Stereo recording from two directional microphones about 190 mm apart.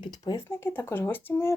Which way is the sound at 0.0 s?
20° left (ahead or behind).